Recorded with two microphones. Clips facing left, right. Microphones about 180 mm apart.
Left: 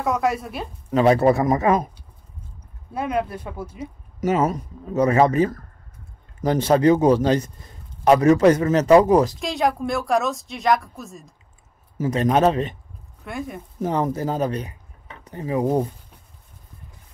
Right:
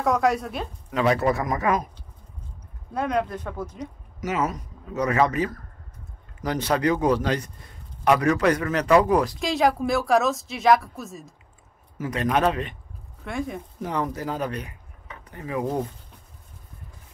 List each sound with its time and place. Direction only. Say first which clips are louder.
0.0 s speech: right 1 dB; centre (ahead or behind)
0.8 s speech: left 6 dB; 30° left (ahead or behind)
2.9 s speech: left 1 dB; 5° left (ahead or behind)
4.2 s speech: left 6 dB; 30° left (ahead or behind)
9.4 s speech: right 1 dB; centre (ahead or behind)
12.1 s speech: left 4 dB; 30° left (ahead or behind)
13.2 s speech: right 1 dB; centre (ahead or behind)
13.8 s speech: left 5 dB; 25° left (ahead or behind)